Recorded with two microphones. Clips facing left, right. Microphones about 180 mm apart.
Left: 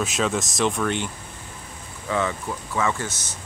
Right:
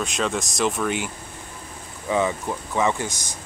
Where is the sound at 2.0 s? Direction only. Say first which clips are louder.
Right 3 dB; 15° right (ahead or behind).